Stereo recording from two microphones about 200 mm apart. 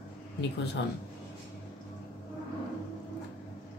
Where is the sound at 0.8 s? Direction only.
60° left (ahead or behind).